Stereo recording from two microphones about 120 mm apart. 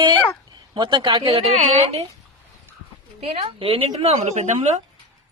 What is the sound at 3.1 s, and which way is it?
A woman's voice, 55° right (ahead or behind).